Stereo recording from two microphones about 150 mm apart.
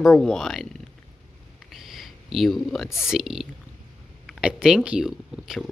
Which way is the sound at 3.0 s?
5° right (ahead or behind).